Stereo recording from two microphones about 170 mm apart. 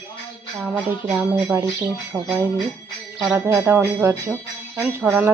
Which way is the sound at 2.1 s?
Centre (ahead or behind).